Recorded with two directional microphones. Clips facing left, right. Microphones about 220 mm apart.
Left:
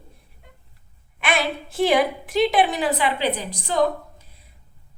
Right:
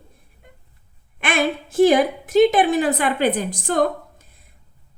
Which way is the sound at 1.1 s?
50° right (ahead or behind).